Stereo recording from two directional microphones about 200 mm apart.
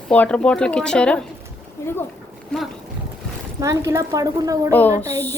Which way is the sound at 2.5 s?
5° left (ahead or behind).